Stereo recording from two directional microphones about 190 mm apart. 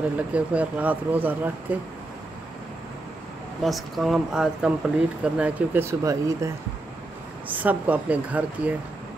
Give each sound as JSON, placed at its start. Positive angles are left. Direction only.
{"t": 0.3, "sound": "speech", "side_deg": -5}
{"t": 3.6, "sound": "speech", "side_deg": 0}